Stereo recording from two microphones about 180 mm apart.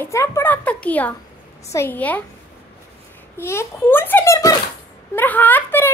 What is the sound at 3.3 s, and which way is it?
A child's voice, 15° left (ahead or behind).